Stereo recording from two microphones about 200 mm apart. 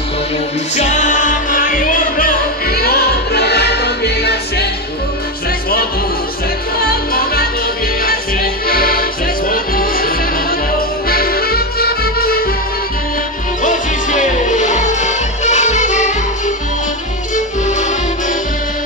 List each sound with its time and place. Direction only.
0.7 s music: 35° left (ahead or behind); by 4.6 s 55° left (ahead or behind)
6.8 s music: 50° left (ahead or behind)
13.6 s music: 40° left (ahead or behind)
17.6 s music: 35° left (ahead or behind)